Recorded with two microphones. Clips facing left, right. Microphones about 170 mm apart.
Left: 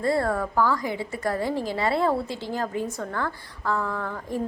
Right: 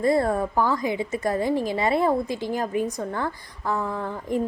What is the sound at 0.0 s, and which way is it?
A woman's voice, 20° right (ahead or behind).